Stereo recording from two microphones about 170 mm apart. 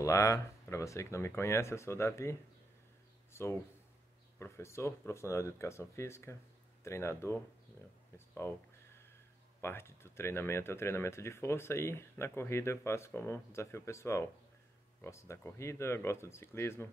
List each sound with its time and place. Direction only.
0.0 s speech: 20° left (ahead or behind)
3.3 s speech: 15° left (ahead or behind)
8.4 s a sound: 15° left (ahead or behind)
9.6 s speech: 15° left (ahead or behind)